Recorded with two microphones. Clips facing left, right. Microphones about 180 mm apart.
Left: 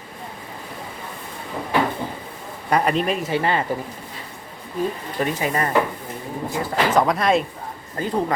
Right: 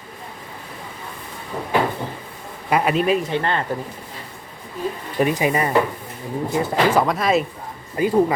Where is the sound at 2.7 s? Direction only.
5° right (ahead or behind).